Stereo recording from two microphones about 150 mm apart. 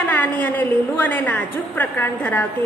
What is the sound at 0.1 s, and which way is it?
A woman's voice, 10° left (ahead or behind).